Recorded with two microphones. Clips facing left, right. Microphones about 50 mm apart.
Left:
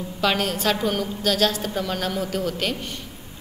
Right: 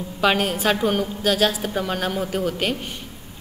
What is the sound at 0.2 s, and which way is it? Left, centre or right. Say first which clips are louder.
A woman's voice: right 3 dB; centre.